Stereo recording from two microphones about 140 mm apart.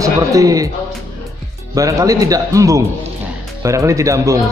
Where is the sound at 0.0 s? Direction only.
25° right (ahead or behind).